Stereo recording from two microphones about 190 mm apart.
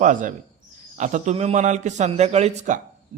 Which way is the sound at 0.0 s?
45° right (ahead or behind).